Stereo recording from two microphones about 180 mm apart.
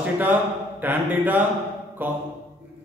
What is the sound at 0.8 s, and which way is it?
Speech, 10° right (ahead or behind).